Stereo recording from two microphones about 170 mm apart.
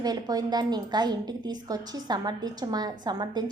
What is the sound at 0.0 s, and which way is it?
A woman's voice, 25° right (ahead or behind).